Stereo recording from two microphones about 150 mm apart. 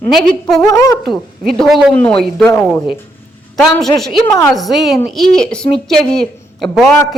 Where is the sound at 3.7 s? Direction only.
5° left (ahead or behind).